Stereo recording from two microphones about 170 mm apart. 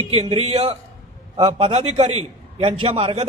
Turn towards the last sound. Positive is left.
turn(degrees=-35)  # may be behind; listen again after turning